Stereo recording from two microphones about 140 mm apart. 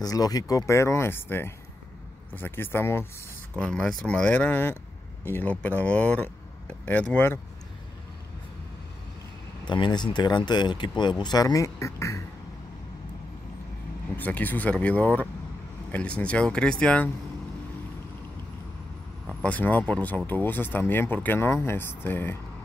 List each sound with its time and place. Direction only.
0.0 s speech: 25° left (ahead or behind)
9.7 s speech: 35° left (ahead or behind)
14.1 s speech: 10° left (ahead or behind)
19.2 s speech: 10° left (ahead or behind)